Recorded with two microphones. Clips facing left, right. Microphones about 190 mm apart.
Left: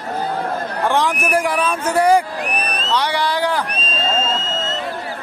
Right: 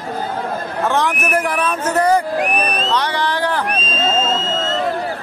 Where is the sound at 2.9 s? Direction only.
10° left (ahead or behind).